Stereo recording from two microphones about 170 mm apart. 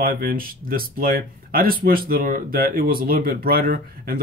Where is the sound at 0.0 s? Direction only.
55° right (ahead or behind).